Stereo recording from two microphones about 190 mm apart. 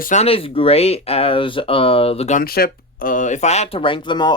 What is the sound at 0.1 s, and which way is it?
Speech, 35° left (ahead or behind).